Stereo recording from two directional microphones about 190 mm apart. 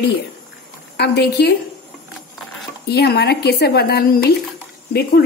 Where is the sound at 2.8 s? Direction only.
60° left (ahead or behind).